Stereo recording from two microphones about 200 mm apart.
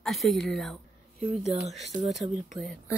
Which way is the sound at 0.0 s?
Centre (ahead or behind).